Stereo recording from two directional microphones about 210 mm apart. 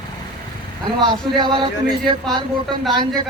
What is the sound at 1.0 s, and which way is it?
Speech, 20° right (ahead or behind).